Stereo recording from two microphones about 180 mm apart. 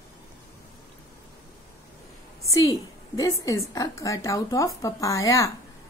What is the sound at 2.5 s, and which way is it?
A woman's voice, 20° left (ahead or behind).